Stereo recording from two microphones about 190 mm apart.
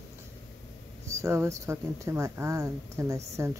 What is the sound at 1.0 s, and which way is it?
Speech, 15° right (ahead or behind).